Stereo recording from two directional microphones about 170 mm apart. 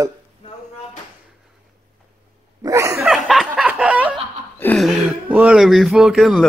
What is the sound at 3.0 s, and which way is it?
Snicker, centre (ahead or behind).